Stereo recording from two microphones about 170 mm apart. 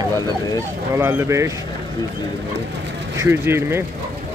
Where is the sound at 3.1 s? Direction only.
15° right (ahead or behind).